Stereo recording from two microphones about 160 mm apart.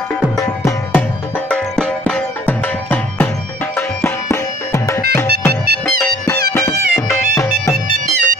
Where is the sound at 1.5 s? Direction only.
5° left (ahead or behind).